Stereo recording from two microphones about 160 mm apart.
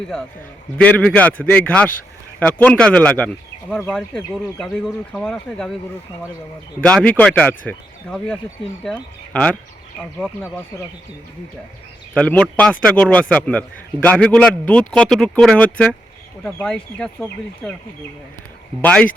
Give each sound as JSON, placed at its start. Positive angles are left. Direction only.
{"t": 0.8, "sound": "a man's voice", "side_deg": 10}
{"t": 6.8, "sound": "a man's voice", "side_deg": 10}
{"t": 12.1, "sound": "a man's voice", "side_deg": 10}
{"t": 18.8, "sound": "a man's voice", "side_deg": 10}